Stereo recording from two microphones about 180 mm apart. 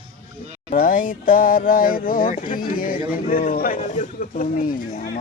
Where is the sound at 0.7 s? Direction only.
50° left (ahead or behind).